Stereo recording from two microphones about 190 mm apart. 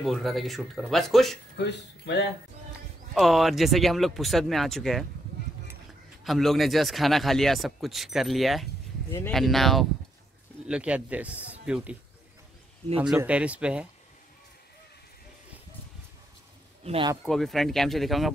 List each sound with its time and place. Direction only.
0.0 s speech: centre (ahead or behind)
1.6 s speech: 65° left (ahead or behind)
3.2 s speech: centre (ahead or behind)
6.2 s speech: centre (ahead or behind)
13.0 s speech: 5° right (ahead or behind)
16.8 s speech: 30° right (ahead or behind)
17.2 s speech: centre (ahead or behind)